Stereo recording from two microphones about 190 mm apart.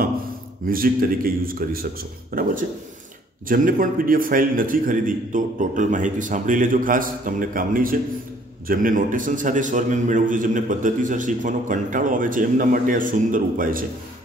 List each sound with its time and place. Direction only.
0.7 s a man's voice: 50° right (ahead or behind)